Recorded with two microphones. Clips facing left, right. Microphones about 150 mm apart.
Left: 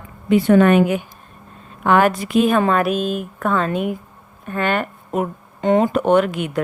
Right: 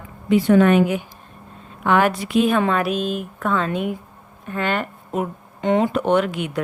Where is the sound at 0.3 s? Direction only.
55° left (ahead or behind).